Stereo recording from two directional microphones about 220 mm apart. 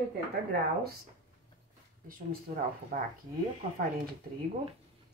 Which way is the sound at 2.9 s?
35° right (ahead or behind).